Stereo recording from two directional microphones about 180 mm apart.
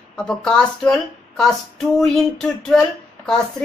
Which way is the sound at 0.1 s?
5° left (ahead or behind).